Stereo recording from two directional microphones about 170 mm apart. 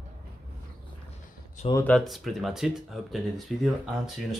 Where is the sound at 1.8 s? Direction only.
5° left (ahead or behind).